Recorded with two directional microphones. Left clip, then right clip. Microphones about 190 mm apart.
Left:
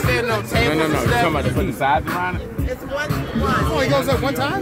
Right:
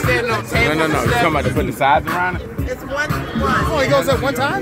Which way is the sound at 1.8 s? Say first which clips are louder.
Right 4 dB; 45° right (ahead or behind).